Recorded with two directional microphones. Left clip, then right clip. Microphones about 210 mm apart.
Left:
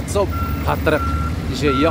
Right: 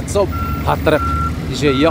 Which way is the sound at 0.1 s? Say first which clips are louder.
Right 3 dB; 10° right (ahead or behind).